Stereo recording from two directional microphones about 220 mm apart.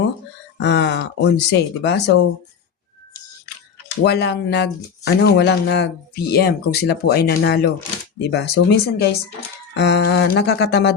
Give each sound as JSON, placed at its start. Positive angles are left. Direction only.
{"t": 0.6, "sound": "speech", "side_deg": 50}
{"t": 4.0, "sound": "speech", "side_deg": 50}